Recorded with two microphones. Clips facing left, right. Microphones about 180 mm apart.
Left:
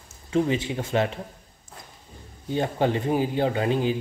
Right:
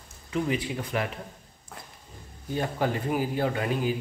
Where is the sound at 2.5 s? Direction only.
25° left (ahead or behind).